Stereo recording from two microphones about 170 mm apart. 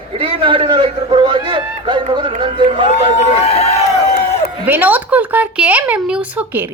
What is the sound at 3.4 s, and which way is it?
Speech, 40° left (ahead or behind).